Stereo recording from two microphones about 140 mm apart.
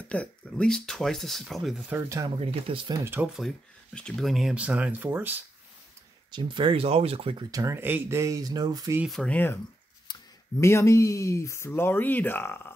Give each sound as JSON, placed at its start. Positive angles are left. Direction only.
{"t": 0.1, "sound": "speech", "side_deg": 5}
{"t": 1.9, "sound": "speech", "side_deg": -20}
{"t": 2.3, "sound": "speech", "side_deg": -40}
{"t": 3.3, "sound": "speech", "side_deg": 5}
{"t": 6.3, "sound": "speech", "side_deg": -35}
{"t": 7.5, "sound": "speech", "side_deg": -20}
{"t": 9.0, "sound": "speech", "side_deg": 0}
{"t": 9.3, "sound": "speech", "side_deg": 15}
{"t": 10.6, "sound": "speech", "side_deg": 20}